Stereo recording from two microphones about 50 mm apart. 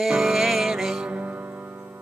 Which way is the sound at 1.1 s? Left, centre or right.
Right.